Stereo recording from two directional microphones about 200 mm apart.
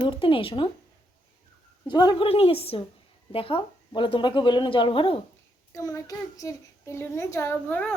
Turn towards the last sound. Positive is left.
turn(degrees=10)  # may be behind; listen again after turning